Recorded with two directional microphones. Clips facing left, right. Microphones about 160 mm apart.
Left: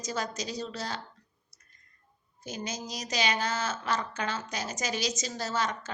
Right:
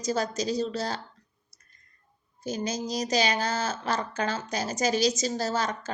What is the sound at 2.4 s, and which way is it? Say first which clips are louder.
Speech: right 7 dB; 35° right (ahead or behind).